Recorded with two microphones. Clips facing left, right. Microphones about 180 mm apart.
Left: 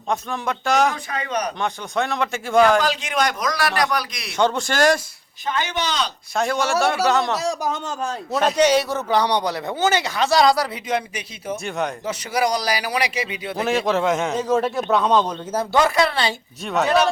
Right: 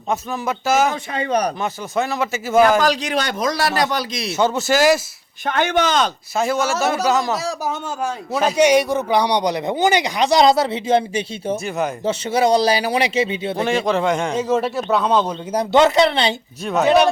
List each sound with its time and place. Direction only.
0.1 s a man's voice: 5° right (ahead or behind)
0.9 s speech: 30° right (ahead or behind)
1.6 s a man's voice: 5° right (ahead or behind)
2.8 s a man's voice: 40° right (ahead or behind)
4.4 s a man's voice: 5° right (ahead or behind)
5.5 s speech: 55° right (ahead or behind)
6.3 s a man's voice: 5° right (ahead or behind); by 13.6 s 25° right (ahead or behind)
13.6 s a man's voice: centre (ahead or behind)
15.7 s a man's voice: 20° right (ahead or behind)